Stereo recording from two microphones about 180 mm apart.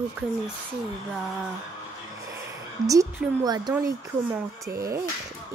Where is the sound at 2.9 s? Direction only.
20° right (ahead or behind).